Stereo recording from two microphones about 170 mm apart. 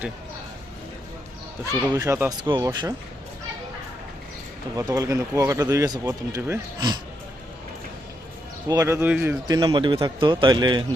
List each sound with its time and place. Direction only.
1.9 s speech: 20° right (ahead or behind)
4.8 s speech: 20° right (ahead or behind)
8.6 s speech: 20° right (ahead or behind)
9.5 s speech: 25° right (ahead or behind)